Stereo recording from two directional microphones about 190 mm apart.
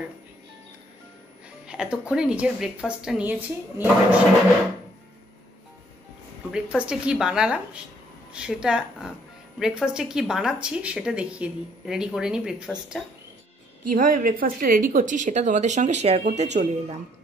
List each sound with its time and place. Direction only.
1.7 s speech: 5° right (ahead or behind)
6.5 s speech: 5° right (ahead or behind)
13.8 s speech: 45° right (ahead or behind)